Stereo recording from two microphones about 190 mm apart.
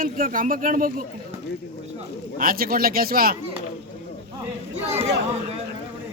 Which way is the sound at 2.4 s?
50° right (ahead or behind).